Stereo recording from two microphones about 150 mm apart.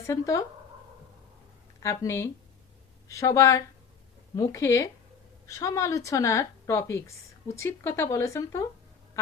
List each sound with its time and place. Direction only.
0.1 s speech: 20° left (ahead or behind)
1.8 s speech: 20° left (ahead or behind)